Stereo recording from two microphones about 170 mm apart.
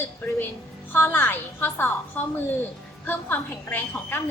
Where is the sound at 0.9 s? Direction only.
10° left (ahead or behind).